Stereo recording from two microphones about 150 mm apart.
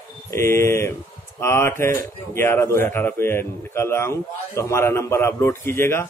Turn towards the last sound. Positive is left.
turn(degrees=15)  # may be behind; listen again after turning